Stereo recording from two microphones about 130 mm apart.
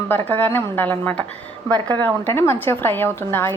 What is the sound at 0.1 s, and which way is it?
A woman's voice, 15° left (ahead or behind).